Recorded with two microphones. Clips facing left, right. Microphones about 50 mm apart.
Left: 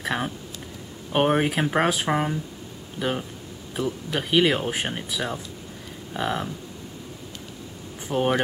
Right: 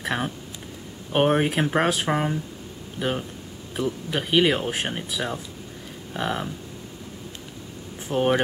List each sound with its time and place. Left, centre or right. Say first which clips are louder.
0.0 s speech: even; centre
8.1 s speech: right 1 dB; centre